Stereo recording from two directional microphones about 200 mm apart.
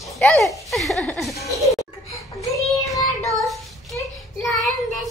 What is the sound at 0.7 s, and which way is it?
Chuckle, centre (ahead or behind).